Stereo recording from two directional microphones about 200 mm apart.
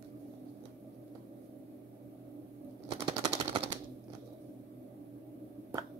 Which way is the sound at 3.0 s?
20° right (ahead or behind).